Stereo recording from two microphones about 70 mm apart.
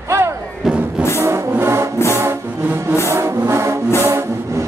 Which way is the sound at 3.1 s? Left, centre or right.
Right.